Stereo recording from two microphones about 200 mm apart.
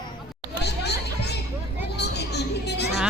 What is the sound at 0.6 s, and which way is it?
Music, 55° left (ahead or behind).